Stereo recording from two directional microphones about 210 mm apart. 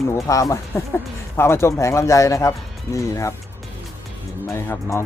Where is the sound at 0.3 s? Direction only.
15° left (ahead or behind).